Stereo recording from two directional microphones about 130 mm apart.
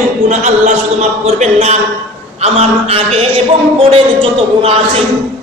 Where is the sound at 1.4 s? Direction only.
60° right (ahead or behind).